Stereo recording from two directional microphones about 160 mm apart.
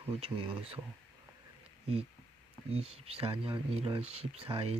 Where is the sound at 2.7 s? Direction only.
40° right (ahead or behind).